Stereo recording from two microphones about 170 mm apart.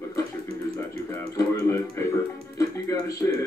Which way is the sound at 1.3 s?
20° left (ahead or behind).